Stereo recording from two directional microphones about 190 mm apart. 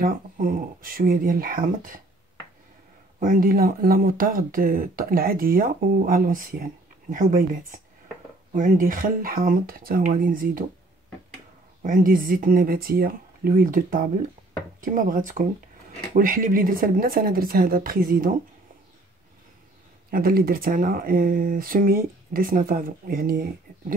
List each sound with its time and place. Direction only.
0.0 s speech: 50° right (ahead or behind)
3.2 s speech: 45° right (ahead or behind)
11.8 s speech: 45° right (ahead or behind)
20.1 s speech: 50° right (ahead or behind)